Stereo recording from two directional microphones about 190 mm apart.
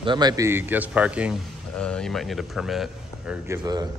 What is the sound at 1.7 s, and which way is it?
Speech, 5° left (ahead or behind).